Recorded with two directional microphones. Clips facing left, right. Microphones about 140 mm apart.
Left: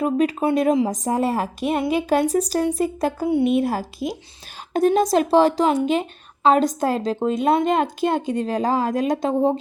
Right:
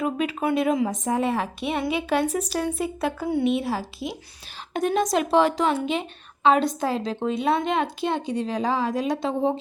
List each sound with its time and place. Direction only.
0.0 s a woman's voice: 40° left (ahead or behind)
4.7 s a woman's voice: 35° left (ahead or behind)